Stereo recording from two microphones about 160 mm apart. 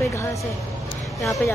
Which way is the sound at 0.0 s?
20° left (ahead or behind).